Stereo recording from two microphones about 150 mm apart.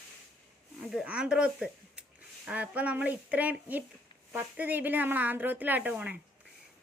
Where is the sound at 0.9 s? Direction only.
5° right (ahead or behind).